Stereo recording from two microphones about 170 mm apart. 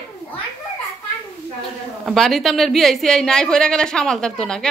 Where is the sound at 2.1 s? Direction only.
Centre (ahead or behind).